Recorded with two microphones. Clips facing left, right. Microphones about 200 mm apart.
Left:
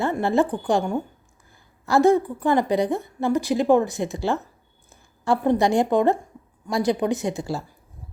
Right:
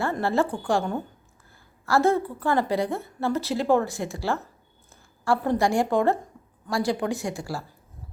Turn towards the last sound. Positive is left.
turn(degrees=20)  # may be behind; listen again after turning